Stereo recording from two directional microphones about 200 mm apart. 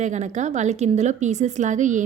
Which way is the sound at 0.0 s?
35° right (ahead or behind).